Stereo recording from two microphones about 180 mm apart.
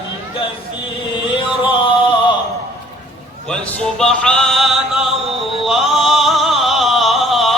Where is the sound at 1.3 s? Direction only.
30° left (ahead or behind).